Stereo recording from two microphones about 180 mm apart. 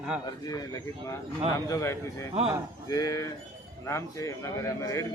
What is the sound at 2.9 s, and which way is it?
Speech, 20° left (ahead or behind).